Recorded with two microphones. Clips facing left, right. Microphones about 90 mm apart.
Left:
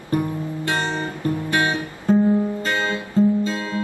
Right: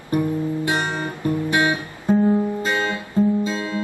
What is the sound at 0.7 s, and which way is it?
Guitar, 15° right (ahead or behind).